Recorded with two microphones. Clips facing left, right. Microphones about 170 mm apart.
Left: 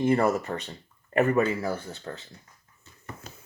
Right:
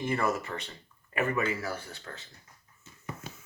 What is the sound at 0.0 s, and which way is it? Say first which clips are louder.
Speech: left 7 dB; 40° left (ahead or behind).